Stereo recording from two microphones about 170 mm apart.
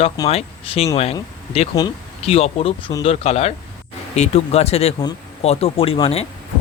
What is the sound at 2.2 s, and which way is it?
Speech, 35° left (ahead or behind).